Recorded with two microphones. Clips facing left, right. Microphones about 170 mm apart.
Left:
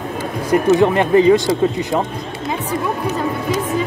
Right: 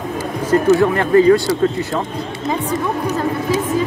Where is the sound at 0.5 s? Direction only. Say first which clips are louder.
Even; 20° left (ahead or behind).